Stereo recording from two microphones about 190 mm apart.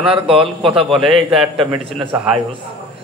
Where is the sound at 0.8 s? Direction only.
Centre (ahead or behind).